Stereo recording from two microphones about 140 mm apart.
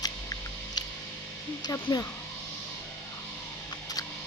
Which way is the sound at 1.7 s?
25° left (ahead or behind).